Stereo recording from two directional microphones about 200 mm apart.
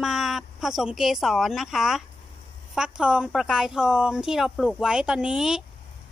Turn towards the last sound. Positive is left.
turn(degrees=-5)  # may be behind; listen again after turning